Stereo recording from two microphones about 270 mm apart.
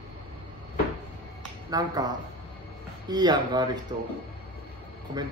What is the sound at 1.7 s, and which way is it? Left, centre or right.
Speech, centre.